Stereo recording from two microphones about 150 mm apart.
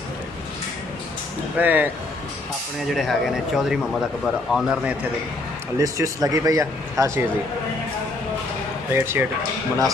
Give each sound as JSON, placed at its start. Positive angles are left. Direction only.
{"t": 1.6, "sound": "speech", "side_deg": -10}
{"t": 2.9, "sound": "speech", "side_deg": 0}
{"t": 5.8, "sound": "speech", "side_deg": -20}
{"t": 8.9, "sound": "speech", "side_deg": -15}